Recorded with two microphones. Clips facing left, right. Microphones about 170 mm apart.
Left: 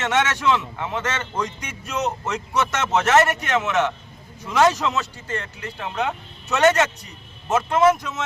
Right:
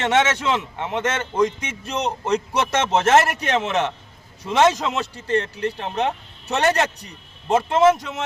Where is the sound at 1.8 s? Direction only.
35° right (ahead or behind).